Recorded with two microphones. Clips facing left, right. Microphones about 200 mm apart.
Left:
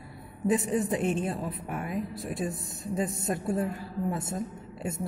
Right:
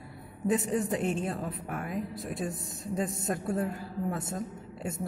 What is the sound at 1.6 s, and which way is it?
Speech, 45° right (ahead or behind).